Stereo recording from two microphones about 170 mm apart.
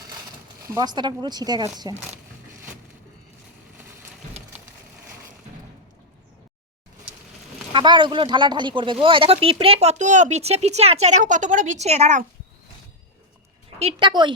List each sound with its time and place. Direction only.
0.7 s speech: 25° right (ahead or behind)
7.7 s speech: 30° right (ahead or behind)
13.7 s speech: 40° right (ahead or behind)
14.1 s speech: 25° right (ahead or behind)